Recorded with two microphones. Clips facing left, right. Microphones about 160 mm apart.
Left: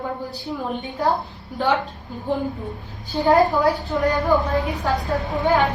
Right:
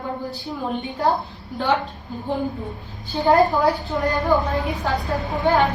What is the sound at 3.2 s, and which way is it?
Speech, centre (ahead or behind).